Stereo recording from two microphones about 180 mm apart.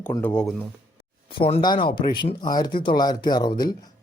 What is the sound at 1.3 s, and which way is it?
Speech, 30° left (ahead or behind).